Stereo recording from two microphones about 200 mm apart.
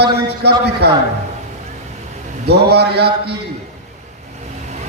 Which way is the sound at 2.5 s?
55° right (ahead or behind).